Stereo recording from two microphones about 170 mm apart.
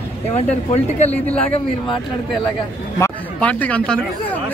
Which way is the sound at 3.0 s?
10° left (ahead or behind).